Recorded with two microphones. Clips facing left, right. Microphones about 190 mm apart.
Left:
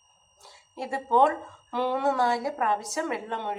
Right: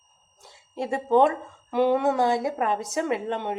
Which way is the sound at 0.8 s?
20° right (ahead or behind).